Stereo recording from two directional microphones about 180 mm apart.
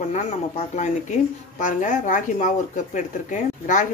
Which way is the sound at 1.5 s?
45° left (ahead or behind).